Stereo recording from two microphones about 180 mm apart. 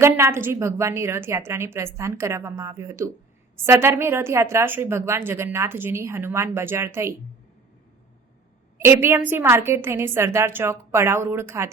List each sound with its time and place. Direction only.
0.0 s a woman's voice: 15° right (ahead or behind)
8.8 s a woman's voice: 15° right (ahead or behind)